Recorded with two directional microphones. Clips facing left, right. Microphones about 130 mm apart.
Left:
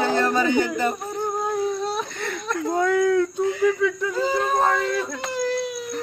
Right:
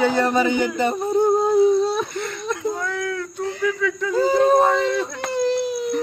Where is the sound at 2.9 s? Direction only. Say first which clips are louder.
Left 8 dB; 10° left (ahead or behind).